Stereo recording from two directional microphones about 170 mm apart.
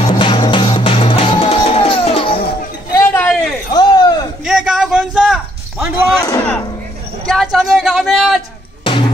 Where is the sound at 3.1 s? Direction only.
5° left (ahead or behind).